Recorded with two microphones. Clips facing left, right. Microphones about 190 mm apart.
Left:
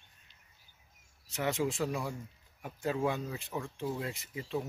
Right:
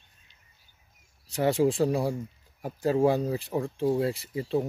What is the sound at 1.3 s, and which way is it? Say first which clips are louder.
Speech: right 9 dB; 35° right (ahead or behind).